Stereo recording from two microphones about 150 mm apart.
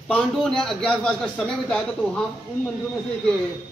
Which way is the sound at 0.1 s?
5° left (ahead or behind).